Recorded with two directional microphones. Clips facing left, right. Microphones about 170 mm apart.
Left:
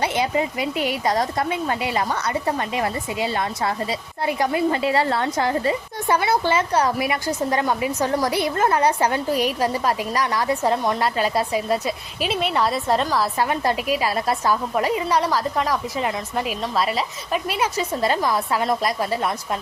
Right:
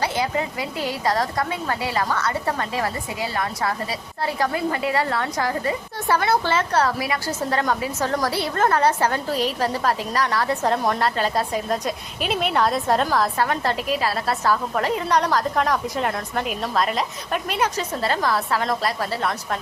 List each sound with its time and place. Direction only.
0.0 s speech: 20° left (ahead or behind)
6.1 s a woman's voice: 10° left (ahead or behind)
13.4 s a woman's voice: 15° left (ahead or behind)